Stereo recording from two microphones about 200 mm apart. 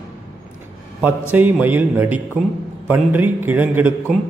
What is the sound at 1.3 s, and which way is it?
Speech, 10° right (ahead or behind).